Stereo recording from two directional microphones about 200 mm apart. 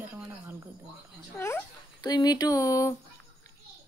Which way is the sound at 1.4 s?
15° left (ahead or behind).